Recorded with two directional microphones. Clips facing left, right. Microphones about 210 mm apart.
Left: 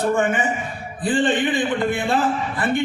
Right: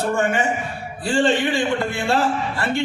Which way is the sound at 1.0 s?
20° left (ahead or behind).